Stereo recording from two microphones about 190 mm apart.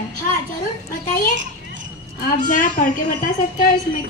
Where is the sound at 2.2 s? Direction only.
40° left (ahead or behind).